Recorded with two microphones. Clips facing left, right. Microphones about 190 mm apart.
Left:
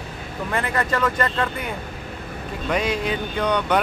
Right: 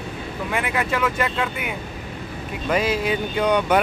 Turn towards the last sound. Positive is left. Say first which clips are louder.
# right 2 dB
turn(degrees=-10)  # may be behind; listen again after turning